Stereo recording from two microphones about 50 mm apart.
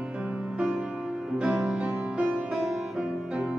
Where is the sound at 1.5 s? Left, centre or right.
Centre.